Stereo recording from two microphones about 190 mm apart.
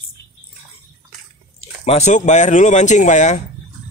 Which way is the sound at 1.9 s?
35° left (ahead or behind).